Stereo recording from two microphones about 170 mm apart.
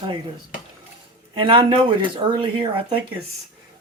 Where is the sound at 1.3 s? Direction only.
30° right (ahead or behind).